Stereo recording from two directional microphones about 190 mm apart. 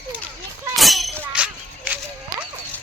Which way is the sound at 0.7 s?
Centre (ahead or behind).